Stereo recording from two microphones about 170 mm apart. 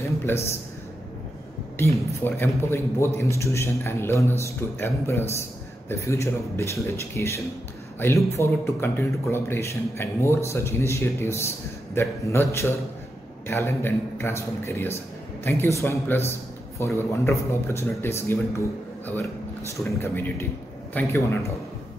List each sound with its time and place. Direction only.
0.2 s a man's voice: 15° left (ahead or behind)
1.8 s a man's voice: 15° left (ahead or behind)
16.3 s a sound: 15° left (ahead or behind)
17.1 s a man's voice: 15° left (ahead or behind)